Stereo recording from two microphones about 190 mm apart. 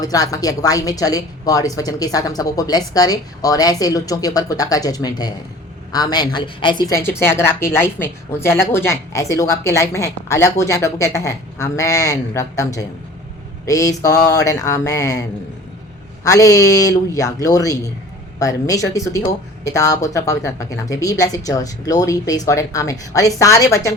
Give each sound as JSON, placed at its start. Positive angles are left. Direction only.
{"t": 0.0, "sound": "a woman's voice", "side_deg": 20}
{"t": 16.2, "sound": "speech", "side_deg": 15}